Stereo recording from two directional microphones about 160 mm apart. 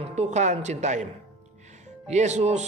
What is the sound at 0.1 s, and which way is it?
Speech, 45° right (ahead or behind).